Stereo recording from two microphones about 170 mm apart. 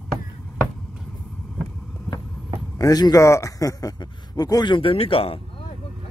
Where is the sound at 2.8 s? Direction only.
20° left (ahead or behind).